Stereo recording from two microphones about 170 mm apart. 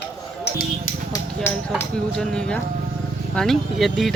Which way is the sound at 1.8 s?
5° left (ahead or behind).